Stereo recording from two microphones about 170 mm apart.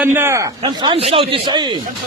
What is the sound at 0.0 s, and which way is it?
Speech, 15° right (ahead or behind).